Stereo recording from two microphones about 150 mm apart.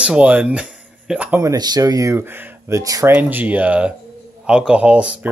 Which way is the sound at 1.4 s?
25° right (ahead or behind).